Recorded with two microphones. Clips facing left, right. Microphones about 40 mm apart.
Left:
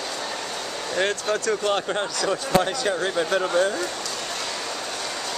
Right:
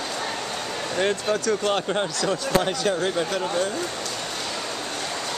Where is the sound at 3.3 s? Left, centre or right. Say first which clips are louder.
Left 4 dB; centre.